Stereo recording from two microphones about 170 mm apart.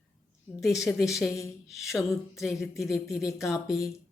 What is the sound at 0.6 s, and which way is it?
Speech, centre (ahead or behind).